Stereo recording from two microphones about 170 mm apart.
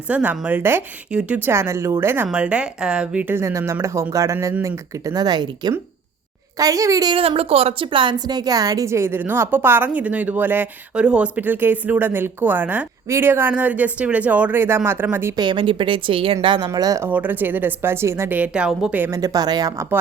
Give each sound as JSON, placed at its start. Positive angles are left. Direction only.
{"t": 0.1, "sound": "a woman's voice", "side_deg": -10}
{"t": 15.4, "sound": "speech", "side_deg": -30}
{"t": 17.1, "sound": "a woman's voice", "side_deg": -10}